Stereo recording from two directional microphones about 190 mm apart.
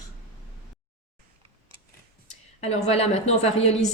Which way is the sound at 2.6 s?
35° left (ahead or behind).